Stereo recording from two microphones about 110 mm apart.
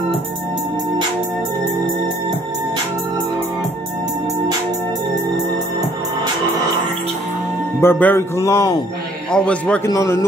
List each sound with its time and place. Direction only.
7.8 s music: 20° left (ahead or behind)
9.3 s a man's voice: 10° left (ahead or behind)
9.8 s music: 25° left (ahead or behind)